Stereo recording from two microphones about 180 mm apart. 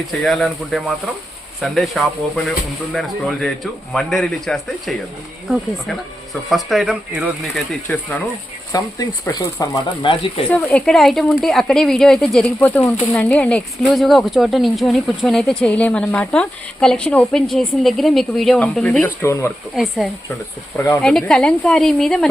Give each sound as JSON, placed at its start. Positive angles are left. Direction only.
{"t": 0.1, "sound": "speech", "side_deg": 0}
{"t": 6.5, "sound": "speech", "side_deg": 0}
{"t": 8.7, "sound": "speech", "side_deg": 20}
{"t": 10.5, "sound": "speech", "side_deg": 10}
{"t": 19.7, "sound": "speech", "side_deg": 0}
{"t": 20.7, "sound": "speech", "side_deg": 15}
{"t": 21.0, "sound": "speech", "side_deg": 5}